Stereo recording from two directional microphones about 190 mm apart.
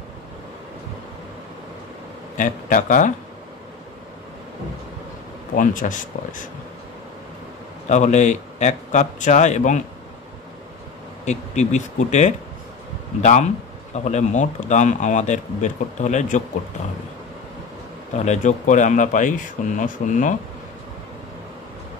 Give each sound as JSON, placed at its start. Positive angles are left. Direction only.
{"t": 2.3, "sound": "speech", "side_deg": 45}
{"t": 5.5, "sound": "speech", "side_deg": 45}
{"t": 7.9, "sound": "speech", "side_deg": 40}
{"t": 11.2, "sound": "speech", "side_deg": 40}
{"t": 18.2, "sound": "speech", "side_deg": 40}